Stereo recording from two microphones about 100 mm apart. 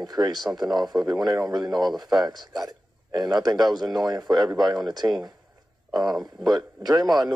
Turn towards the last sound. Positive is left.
turn(degrees=-40)  # may be behind; listen again after turning